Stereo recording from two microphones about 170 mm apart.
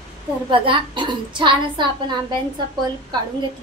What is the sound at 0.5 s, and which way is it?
A woman's voice, 30° right (ahead or behind).